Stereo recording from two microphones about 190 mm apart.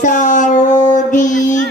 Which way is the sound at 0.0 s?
40° left (ahead or behind).